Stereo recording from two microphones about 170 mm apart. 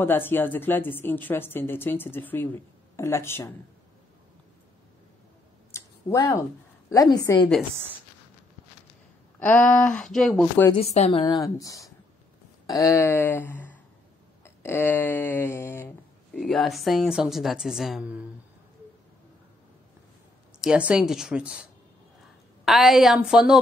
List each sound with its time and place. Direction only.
0.0 s a woman's voice: 10° left (ahead or behind)
5.7 s a sound: 15° left (ahead or behind)
6.9 s a woman's voice: 20° left (ahead or behind)
9.4 s speech: 10° left (ahead or behind)
10.7 s a woman's voice: 40° left (ahead or behind); by 15.9 s 15° left (ahead or behind)
16.3 s speech: centre (ahead or behind)
20.6 s speech: 5° right (ahead or behind)
22.7 s speech: centre (ahead or behind)